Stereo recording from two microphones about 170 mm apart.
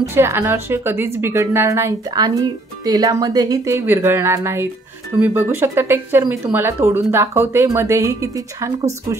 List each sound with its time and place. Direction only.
0.1 s a woman's voice: 15° right (ahead or behind)